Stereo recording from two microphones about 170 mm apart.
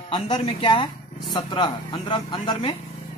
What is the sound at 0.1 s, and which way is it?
A woman's voice, 25° left (ahead or behind).